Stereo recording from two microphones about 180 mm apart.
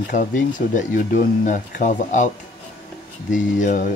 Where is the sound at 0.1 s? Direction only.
45° left (ahead or behind).